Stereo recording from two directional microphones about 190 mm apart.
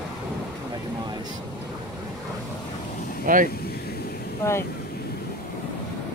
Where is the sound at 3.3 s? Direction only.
45° right (ahead or behind).